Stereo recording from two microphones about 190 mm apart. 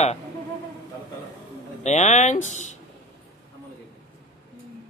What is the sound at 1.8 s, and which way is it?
Speech, 35° left (ahead or behind).